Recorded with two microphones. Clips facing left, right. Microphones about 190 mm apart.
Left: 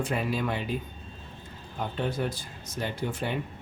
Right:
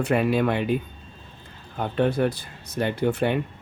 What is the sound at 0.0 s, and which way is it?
Speech, 65° right (ahead or behind).